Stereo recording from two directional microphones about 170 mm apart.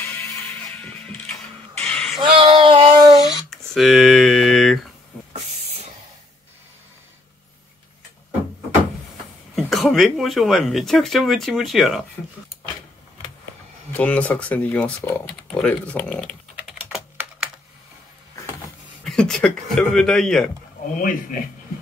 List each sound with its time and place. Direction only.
0.0 s music: 10° left (ahead or behind)
1.3 s a sound: 10° left (ahead or behind)
2.1 s child singing: 25° right (ahead or behind)
3.4 s a sound: centre (ahead or behind)
5.3 s hiss: 40° right (ahead or behind)
9.6 s speech: centre (ahead or behind)
13.9 s a sound: 10° left (ahead or behind)
19.0 s speech: 5° left (ahead or behind)
20.9 s speech: 55° left (ahead or behind)